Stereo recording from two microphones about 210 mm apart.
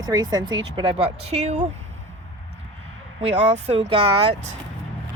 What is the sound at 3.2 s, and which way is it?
Speech, 30° right (ahead or behind).